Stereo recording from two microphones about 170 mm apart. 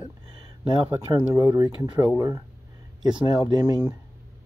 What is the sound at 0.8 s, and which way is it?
Speech, 10° right (ahead or behind).